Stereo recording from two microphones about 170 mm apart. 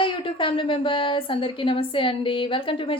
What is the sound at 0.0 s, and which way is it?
Speech, 30° left (ahead or behind).